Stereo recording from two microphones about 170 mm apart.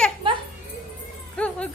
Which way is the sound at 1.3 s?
5° left (ahead or behind).